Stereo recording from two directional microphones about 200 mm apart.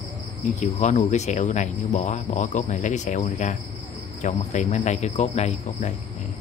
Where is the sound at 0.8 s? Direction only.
35° left (ahead or behind).